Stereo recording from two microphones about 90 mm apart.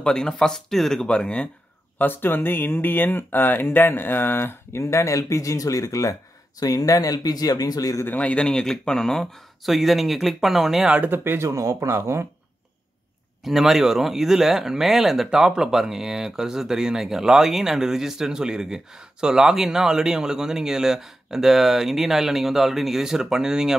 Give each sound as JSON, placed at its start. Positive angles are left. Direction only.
{"t": 0.0, "sound": "speech", "side_deg": 10}
{"t": 2.0, "sound": "speech", "side_deg": 25}
{"t": 8.0, "sound": "speech", "side_deg": 15}
{"t": 11.0, "sound": "speech", "side_deg": -25}
{"t": 13.4, "sound": "speech", "side_deg": 0}